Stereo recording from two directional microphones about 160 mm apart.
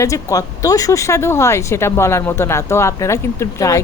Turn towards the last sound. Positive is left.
turn(degrees=20)  # may be behind; listen again after turning